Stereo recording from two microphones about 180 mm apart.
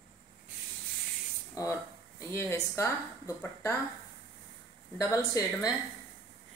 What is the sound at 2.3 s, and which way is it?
A woman's voice, 15° left (ahead or behind).